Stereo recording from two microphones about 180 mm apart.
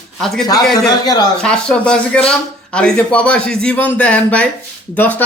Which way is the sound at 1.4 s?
5° left (ahead or behind).